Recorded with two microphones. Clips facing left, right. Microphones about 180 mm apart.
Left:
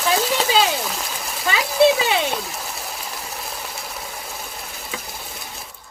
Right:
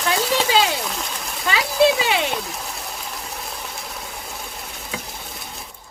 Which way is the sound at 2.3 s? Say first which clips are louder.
Even; centre (ahead or behind).